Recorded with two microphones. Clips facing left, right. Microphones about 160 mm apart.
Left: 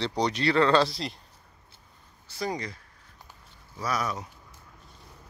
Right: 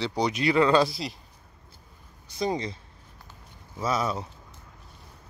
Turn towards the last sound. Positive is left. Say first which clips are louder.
# right 3 dB
turn(degrees=-25)  # may be behind; listen again after turning